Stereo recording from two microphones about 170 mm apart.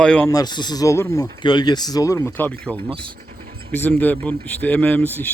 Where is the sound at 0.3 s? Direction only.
25° left (ahead or behind).